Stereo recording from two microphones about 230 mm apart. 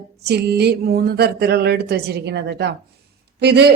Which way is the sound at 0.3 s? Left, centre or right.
Right.